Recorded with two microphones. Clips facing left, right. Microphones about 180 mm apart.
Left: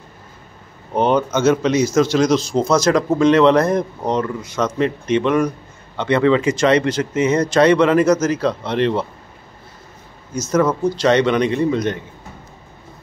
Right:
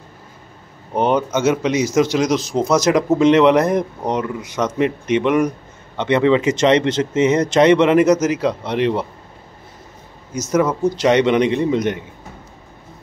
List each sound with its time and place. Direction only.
0.9 s speech: 15° right (ahead or behind)
10.3 s speech: 15° right (ahead or behind)